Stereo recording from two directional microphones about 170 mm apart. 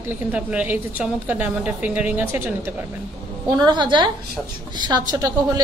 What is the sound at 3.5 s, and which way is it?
A woman's voice, 25° right (ahead or behind).